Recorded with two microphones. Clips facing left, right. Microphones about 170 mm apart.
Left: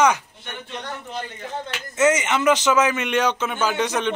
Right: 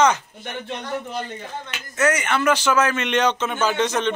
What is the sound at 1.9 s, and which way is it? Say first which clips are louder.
A man's voice: left 2 dB; 25° left (ahead or behind).